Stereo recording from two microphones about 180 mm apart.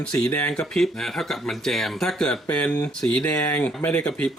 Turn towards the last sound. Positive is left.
turn(degrees=5)  # may be behind; listen again after turning